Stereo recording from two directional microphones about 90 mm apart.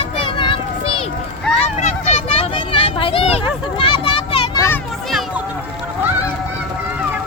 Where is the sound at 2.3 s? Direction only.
80° left.